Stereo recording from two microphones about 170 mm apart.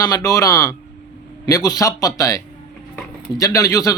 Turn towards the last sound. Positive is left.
turn(degrees=20)  # may be behind; listen again after turning